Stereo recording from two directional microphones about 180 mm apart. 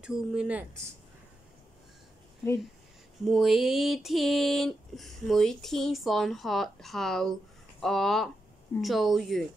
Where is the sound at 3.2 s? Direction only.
Centre (ahead or behind).